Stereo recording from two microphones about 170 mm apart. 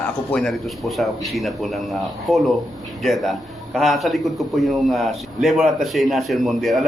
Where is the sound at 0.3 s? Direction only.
Centre (ahead or behind).